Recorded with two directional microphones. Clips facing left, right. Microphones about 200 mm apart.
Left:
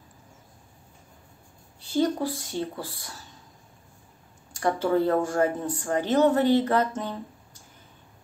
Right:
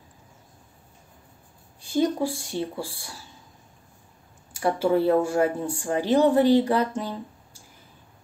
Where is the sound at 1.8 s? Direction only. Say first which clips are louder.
Right 1 dB; 15° right (ahead or behind).